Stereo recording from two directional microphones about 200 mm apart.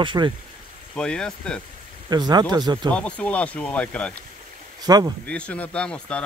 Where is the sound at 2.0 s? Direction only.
20° right (ahead or behind).